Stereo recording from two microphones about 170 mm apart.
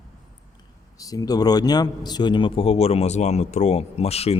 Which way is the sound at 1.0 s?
20° left (ahead or behind).